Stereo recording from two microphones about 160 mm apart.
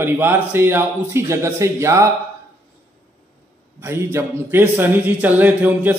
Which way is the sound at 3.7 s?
15° right (ahead or behind).